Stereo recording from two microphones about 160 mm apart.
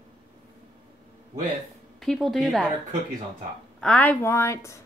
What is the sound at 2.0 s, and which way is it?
Speech, centre (ahead or behind).